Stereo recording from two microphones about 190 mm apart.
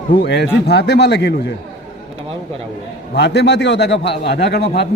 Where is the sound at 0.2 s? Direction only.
60° left (ahead or behind).